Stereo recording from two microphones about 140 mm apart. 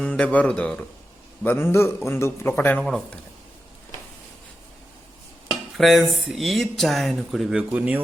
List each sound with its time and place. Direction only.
0.0 s a man's voice: 5° left (ahead or behind)
5.7 s speech: centre (ahead or behind)
7.7 s a man's voice: 10° right (ahead or behind)